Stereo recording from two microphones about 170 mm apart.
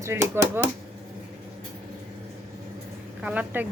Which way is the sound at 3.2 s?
10° right (ahead or behind).